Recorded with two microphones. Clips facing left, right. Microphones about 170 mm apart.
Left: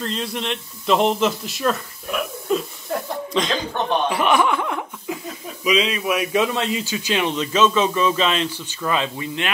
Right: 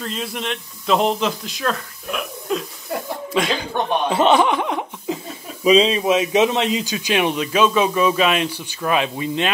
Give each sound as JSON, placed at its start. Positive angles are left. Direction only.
{"t": 0.0, "sound": "a man's voice", "side_deg": -5}
{"t": 3.3, "sound": "speech", "side_deg": -10}
{"t": 4.1, "sound": "speech", "side_deg": -25}